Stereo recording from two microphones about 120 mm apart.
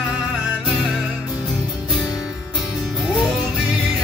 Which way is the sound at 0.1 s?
10° right (ahead or behind).